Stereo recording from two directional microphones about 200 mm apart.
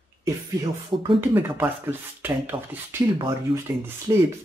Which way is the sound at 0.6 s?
15° right (ahead or behind).